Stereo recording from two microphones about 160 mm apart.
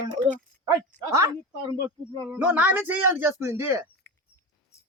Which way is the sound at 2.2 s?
10° right (ahead or behind).